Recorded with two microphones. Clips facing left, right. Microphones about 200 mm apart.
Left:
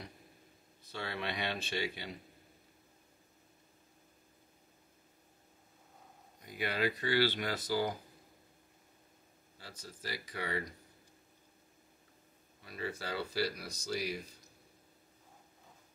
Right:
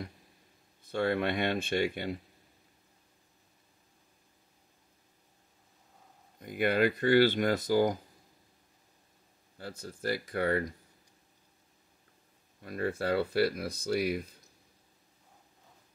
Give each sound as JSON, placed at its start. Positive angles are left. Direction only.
{"t": 0.9, "sound": "speech", "side_deg": -50}
{"t": 6.4, "sound": "speech", "side_deg": -55}
{"t": 9.6, "sound": "speech", "side_deg": -55}
{"t": 12.6, "sound": "speech", "side_deg": -55}